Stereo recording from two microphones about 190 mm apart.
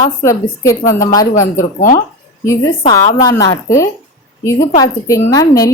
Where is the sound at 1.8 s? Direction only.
45° left (ahead or behind).